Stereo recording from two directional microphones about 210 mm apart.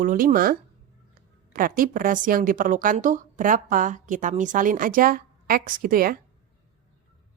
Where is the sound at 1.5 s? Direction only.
40° right (ahead or behind).